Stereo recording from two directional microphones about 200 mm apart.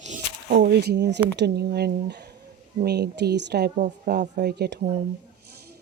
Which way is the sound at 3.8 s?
45° right (ahead or behind).